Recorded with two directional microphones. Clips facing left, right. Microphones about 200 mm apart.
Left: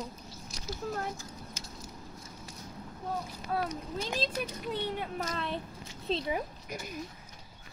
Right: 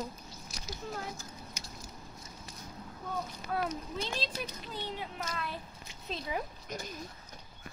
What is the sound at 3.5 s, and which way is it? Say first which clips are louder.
Speech: left 1 dB; 35° left (ahead or behind).